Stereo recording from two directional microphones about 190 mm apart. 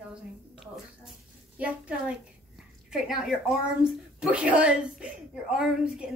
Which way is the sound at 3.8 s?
5° right (ahead or behind).